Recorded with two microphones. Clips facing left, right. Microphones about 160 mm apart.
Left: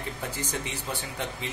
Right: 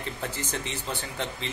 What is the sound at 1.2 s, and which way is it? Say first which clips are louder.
Speech: right 2 dB; 10° left (ahead or behind).